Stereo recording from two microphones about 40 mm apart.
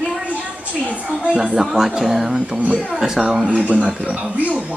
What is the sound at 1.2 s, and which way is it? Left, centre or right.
Speech, centre.